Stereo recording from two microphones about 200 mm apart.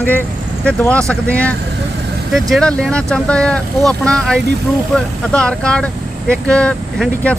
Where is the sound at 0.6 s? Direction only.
5° left (ahead or behind).